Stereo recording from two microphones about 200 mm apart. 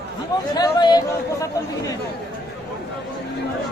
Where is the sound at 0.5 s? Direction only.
20° left (ahead or behind).